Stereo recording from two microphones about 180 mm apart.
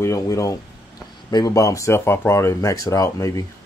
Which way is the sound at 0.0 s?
15° left (ahead or behind).